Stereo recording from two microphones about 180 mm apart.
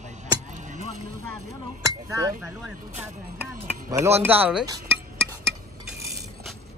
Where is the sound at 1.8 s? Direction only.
20° right (ahead or behind).